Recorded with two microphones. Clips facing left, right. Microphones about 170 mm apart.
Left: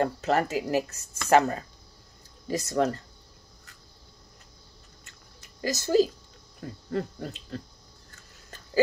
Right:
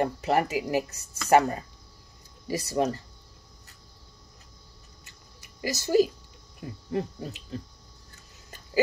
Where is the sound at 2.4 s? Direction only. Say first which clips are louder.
Left 1 dB; 10° right (ahead or behind).